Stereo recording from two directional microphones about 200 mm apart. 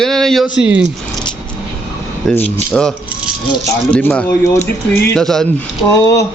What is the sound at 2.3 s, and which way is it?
Speech, 5° left (ahead or behind).